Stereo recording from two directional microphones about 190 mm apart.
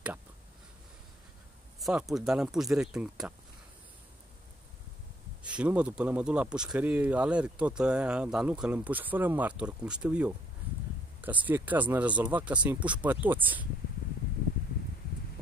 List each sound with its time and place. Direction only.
1.8 s speech: centre (ahead or behind)
5.6 s speech: 5° right (ahead or behind)